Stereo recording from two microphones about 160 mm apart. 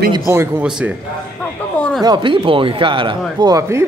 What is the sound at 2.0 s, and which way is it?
Speech, 30° right (ahead or behind).